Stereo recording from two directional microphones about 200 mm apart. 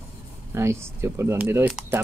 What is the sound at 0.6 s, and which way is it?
Speech, 15° right (ahead or behind).